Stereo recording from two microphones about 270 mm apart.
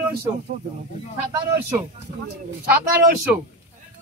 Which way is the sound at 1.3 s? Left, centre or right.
Centre.